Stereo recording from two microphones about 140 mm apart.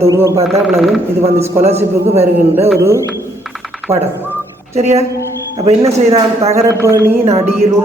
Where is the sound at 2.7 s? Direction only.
20° right (ahead or behind).